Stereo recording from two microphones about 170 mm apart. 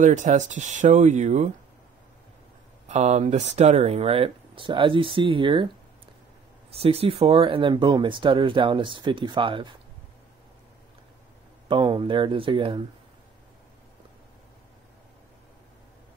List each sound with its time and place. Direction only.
0.0 s speech: 45° right (ahead or behind)
2.9 s speech: 40° right (ahead or behind)
6.7 s speech: 35° right (ahead or behind)
11.7 s speech: 30° right (ahead or behind)